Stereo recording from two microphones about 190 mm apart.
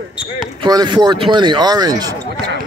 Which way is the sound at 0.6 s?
20° right (ahead or behind).